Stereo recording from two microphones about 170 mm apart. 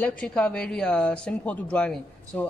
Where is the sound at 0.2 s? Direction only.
5° left (ahead or behind).